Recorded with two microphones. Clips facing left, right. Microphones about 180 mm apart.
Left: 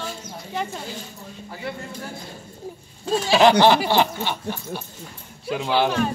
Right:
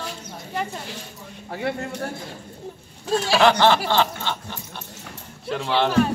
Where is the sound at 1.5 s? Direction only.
65° right (ahead or behind).